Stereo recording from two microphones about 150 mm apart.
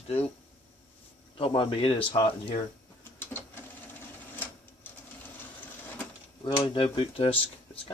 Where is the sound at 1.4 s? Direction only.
40° left (ahead or behind).